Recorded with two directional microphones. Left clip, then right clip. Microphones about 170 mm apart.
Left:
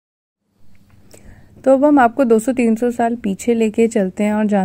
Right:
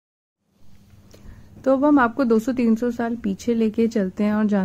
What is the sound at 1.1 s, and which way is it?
A woman's voice, 15° left (ahead or behind).